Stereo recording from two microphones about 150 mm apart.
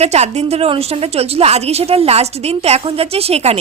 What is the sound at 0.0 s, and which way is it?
A woman's voice, 45° right (ahead or behind).